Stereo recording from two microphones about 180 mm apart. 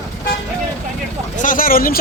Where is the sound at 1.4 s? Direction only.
50° left (ahead or behind).